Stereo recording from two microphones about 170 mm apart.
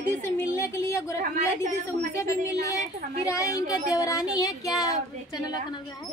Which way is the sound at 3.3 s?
20° left (ahead or behind).